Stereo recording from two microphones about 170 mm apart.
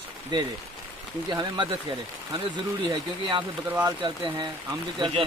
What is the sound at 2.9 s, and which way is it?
Speech, 20° right (ahead or behind).